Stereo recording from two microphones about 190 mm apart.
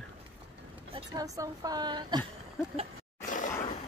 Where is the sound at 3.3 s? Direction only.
45° left (ahead or behind).